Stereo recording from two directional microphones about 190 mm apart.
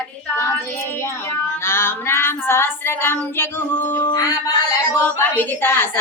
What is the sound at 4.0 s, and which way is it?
Music, 20° left (ahead or behind).